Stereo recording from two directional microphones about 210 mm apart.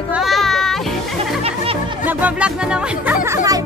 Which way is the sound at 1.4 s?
25° right (ahead or behind).